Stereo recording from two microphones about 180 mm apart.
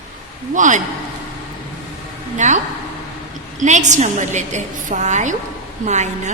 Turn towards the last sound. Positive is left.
turn(degrees=-40)  # may be behind; listen again after turning